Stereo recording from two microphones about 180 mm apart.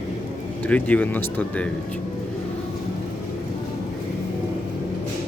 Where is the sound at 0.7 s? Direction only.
10° left (ahead or behind).